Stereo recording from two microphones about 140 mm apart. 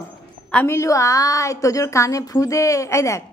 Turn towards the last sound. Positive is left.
turn(degrees=20)  # may be behind; listen again after turning